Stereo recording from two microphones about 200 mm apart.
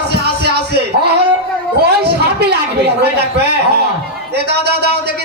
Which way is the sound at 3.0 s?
55° right (ahead or behind).